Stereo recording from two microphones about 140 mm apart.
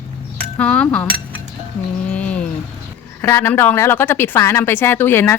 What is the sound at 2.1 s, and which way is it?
Speech, 10° left (ahead or behind).